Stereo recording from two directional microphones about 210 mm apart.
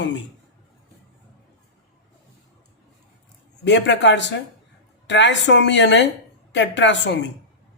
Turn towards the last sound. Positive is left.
turn(degrees=60)  # may be behind; listen again after turning